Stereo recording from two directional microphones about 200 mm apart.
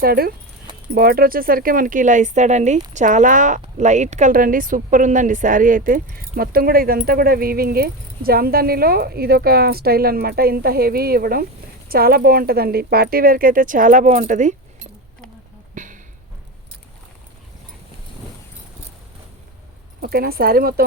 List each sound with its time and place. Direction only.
0.0 s speech: 50° right (ahead or behind)
15.7 s a sound: 40° right (ahead or behind)
20.0 s speech: 50° right (ahead or behind)